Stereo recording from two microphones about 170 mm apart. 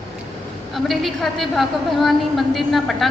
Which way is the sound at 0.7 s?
Centre (ahead or behind).